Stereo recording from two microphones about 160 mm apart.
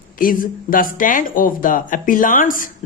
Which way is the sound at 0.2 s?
60° left (ahead or behind).